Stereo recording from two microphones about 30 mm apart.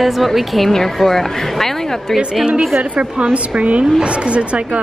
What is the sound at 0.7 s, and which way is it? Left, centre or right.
A woman's voice, centre.